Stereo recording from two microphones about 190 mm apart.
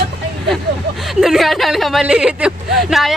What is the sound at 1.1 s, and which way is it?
Speech, centre (ahead or behind).